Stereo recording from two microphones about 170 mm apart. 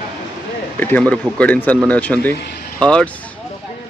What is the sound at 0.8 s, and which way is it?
Speech, 10° left (ahead or behind).